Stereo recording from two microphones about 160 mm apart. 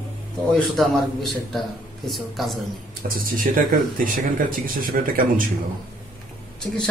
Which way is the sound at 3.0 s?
60° right (ahead or behind).